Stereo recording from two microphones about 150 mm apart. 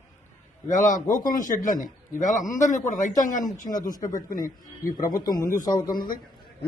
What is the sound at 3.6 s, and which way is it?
Speech, 25° left (ahead or behind).